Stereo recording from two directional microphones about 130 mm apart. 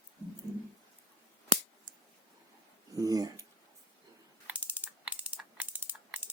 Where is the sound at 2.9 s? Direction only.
25° right (ahead or behind).